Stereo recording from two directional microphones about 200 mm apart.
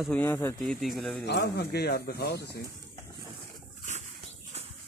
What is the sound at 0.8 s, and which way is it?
Speech, centre (ahead or behind).